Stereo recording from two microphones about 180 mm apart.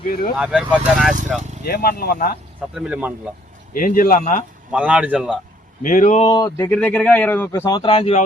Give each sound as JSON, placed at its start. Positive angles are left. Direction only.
{"t": 0.3, "sound": "speech", "side_deg": -5}
{"t": 1.6, "sound": "speech", "side_deg": 55}
{"t": 2.7, "sound": "speech", "side_deg": -5}
{"t": 3.8, "sound": "speech", "side_deg": 50}
{"t": 4.7, "sound": "speech", "side_deg": -5}
{"t": 5.8, "sound": "speech", "side_deg": 45}
{"t": 6.2, "sound": "speech", "side_deg": 20}
{"t": 6.7, "sound": "speech", "side_deg": 10}